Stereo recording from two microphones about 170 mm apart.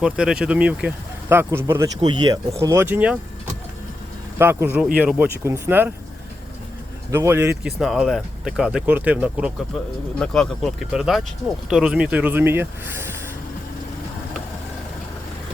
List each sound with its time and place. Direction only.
0.0 s speech: 5° right (ahead or behind)
2.0 s speech: 25° right (ahead or behind); by 3.2 s 10° right (ahead or behind)
4.4 s speech: 15° right (ahead or behind)
7.1 s speech: 15° right (ahead or behind)
10.2 s speech: 5° left (ahead or behind); by 13.1 s 15° right (ahead or behind)